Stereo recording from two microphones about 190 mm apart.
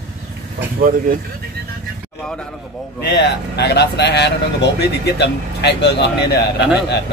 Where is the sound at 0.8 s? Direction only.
45° right (ahead or behind).